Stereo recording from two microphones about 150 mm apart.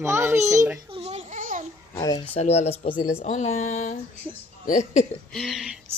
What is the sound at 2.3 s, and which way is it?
Speech, 45° left (ahead or behind).